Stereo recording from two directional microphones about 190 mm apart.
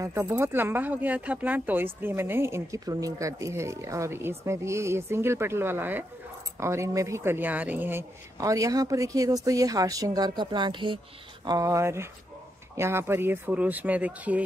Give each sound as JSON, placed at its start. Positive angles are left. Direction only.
{"t": 0.0, "sound": "speech", "side_deg": -15}